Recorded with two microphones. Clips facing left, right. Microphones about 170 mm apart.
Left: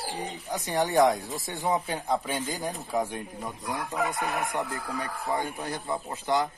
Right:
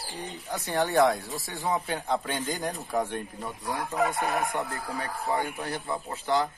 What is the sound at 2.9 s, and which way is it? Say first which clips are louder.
Speech: even; 10° left (ahead or behind).